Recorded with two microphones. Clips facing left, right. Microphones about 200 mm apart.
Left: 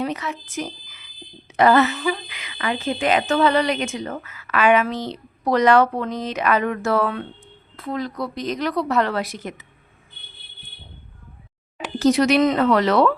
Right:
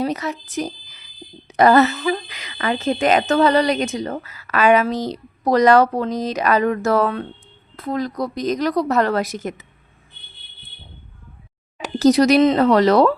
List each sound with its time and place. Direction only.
0.0 s a woman's voice: 40° right (ahead or behind)
11.8 s a woman's voice: 40° right (ahead or behind)